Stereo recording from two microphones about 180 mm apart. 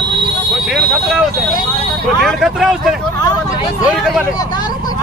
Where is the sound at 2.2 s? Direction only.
Centre (ahead or behind).